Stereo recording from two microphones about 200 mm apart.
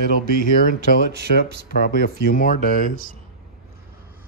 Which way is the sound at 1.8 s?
45° left (ahead or behind).